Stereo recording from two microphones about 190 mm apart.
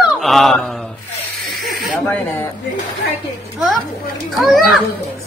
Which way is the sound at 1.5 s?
Centre (ahead or behind).